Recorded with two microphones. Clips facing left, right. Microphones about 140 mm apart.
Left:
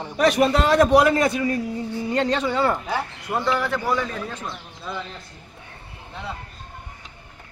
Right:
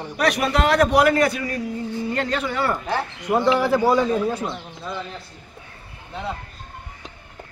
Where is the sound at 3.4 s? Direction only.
20° right (ahead or behind).